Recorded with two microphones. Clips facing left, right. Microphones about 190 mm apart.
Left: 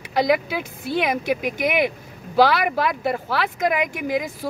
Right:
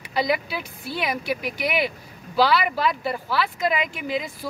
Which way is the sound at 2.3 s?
55° left (ahead or behind).